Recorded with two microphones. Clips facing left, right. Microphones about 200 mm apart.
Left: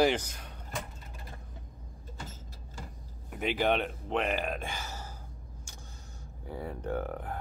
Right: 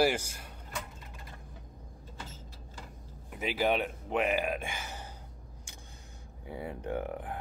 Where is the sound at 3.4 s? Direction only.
5° right (ahead or behind).